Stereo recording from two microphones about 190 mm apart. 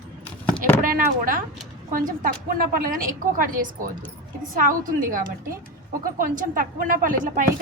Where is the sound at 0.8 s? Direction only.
45° right (ahead or behind).